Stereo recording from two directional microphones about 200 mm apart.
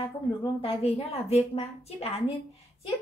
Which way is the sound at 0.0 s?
25° left (ahead or behind).